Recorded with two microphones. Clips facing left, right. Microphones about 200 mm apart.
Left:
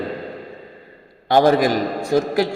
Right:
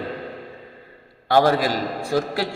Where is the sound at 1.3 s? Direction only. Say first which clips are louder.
Left 3 dB; 20° left (ahead or behind).